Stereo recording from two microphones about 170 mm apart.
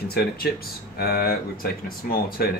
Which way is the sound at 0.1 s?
70° left (ahead or behind).